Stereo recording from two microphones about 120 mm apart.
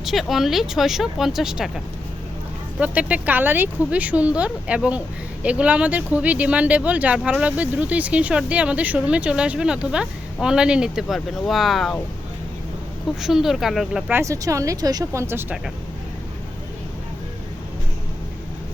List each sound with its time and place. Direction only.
0.0 s speech: centre (ahead or behind)
13.2 s speech: 5° right (ahead or behind)
14.1 s speech: 25° right (ahead or behind)